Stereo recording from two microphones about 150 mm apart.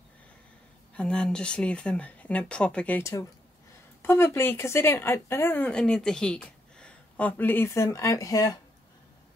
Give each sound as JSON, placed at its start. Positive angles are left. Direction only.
{"t": 0.9, "sound": "speech", "side_deg": 5}
{"t": 3.0, "sound": "speech", "side_deg": 20}